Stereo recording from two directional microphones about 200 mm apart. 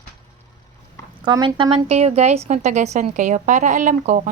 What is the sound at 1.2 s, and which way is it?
Speech, 20° right (ahead or behind).